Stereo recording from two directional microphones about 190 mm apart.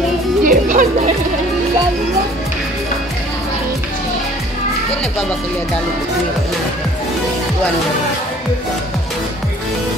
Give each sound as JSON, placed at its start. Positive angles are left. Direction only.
{"t": 0.4, "sound": "music", "side_deg": -45}